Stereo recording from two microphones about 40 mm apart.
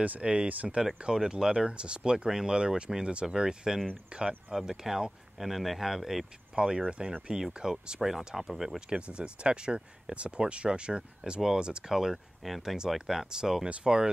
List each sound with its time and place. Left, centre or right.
0.2 s speech: right
0.5 s speech: right
1.0 s speech: centre
4.6 s speech: centre
6.5 s speech: centre
8.7 s speech: right
12.4 s speech: centre
12.7 s speech: centre